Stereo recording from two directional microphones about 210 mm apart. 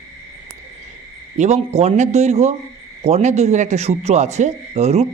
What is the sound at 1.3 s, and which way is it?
Speech, 30° right (ahead or behind).